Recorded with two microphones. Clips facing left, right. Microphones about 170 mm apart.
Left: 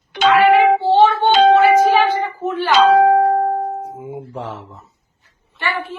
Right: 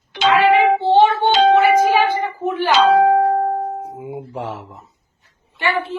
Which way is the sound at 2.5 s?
15° right (ahead or behind).